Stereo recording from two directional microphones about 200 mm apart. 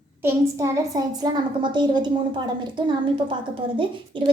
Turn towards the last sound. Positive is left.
turn(degrees=-25)  # may be behind; listen again after turning